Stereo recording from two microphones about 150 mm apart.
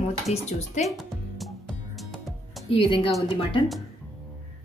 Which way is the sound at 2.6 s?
35° left (ahead or behind).